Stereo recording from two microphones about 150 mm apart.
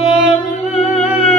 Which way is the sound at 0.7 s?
45° left (ahead or behind).